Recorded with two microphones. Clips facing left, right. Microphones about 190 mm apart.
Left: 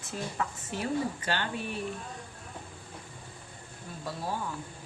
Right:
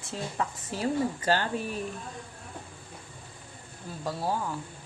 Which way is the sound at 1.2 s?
40° right (ahead or behind).